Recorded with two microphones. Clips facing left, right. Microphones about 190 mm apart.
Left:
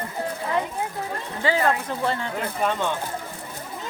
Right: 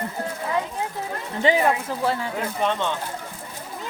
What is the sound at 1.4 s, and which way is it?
Speech, 15° right (ahead or behind).